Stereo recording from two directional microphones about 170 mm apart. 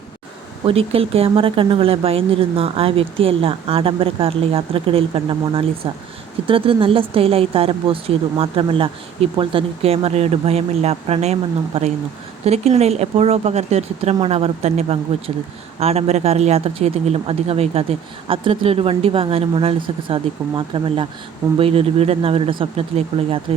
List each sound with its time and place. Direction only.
0.6 s speech: 35° right (ahead or behind)